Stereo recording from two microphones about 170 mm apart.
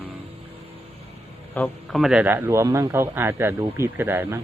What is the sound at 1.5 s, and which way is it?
Speech, centre (ahead or behind).